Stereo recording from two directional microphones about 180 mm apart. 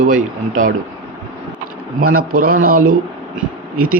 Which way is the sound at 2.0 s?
55° right (ahead or behind).